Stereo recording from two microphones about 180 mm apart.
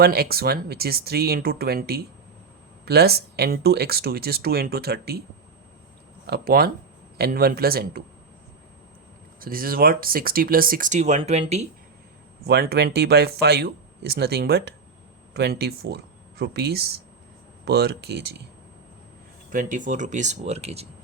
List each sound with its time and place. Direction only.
0.0 s speech: 60° right (ahead or behind)
6.2 s speech: 60° right (ahead or behind)
9.4 s speech: 55° right (ahead or behind); by 11.6 s 35° right (ahead or behind)
12.5 s speech: 60° right (ahead or behind)
19.5 s speech: 45° right (ahead or behind)